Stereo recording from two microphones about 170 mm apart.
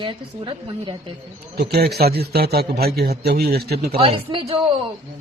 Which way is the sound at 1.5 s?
75° right (ahead or behind).